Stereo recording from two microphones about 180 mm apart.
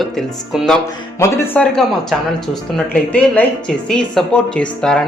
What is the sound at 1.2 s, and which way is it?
Speech, 15° left (ahead or behind).